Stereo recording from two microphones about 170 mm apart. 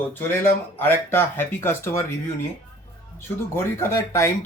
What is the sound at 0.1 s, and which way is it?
Speech, 10° left (ahead or behind).